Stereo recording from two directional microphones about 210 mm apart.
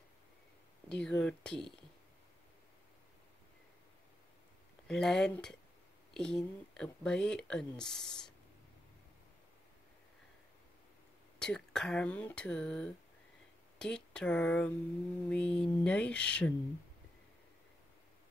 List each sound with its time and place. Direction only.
0.8 s speech: 5° left (ahead or behind)
4.8 s speech: 5° left (ahead or behind)
11.3 s speech: 5° left (ahead or behind)